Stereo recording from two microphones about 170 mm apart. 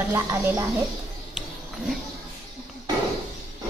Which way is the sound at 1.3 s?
Centre (ahead or behind).